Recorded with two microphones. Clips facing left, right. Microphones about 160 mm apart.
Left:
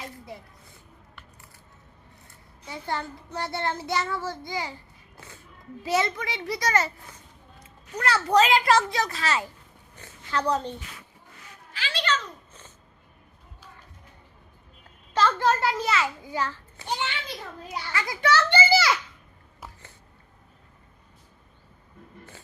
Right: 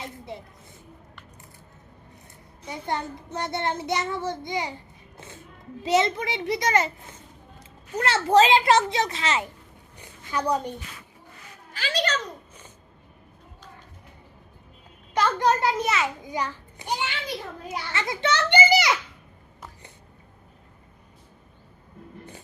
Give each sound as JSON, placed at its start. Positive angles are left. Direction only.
{"t": 0.0, "sound": "a child's voice", "side_deg": -25}
{"t": 2.6, "sound": "a child's voice", "side_deg": -20}
{"t": 5.1, "sound": "music", "side_deg": -20}
{"t": 5.8, "sound": "a child's voice", "side_deg": -20}
{"t": 11.7, "sound": "a child's voice", "side_deg": -45}
{"t": 15.1, "sound": "a child's voice", "side_deg": -15}